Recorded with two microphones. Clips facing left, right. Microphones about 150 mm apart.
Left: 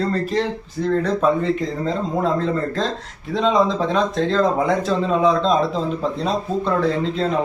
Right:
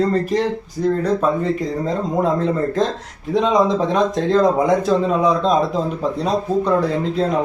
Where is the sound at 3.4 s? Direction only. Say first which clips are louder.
Right 2 dB; 15° right (ahead or behind).